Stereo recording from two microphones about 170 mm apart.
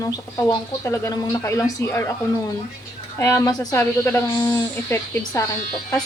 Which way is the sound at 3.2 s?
20° left (ahead or behind).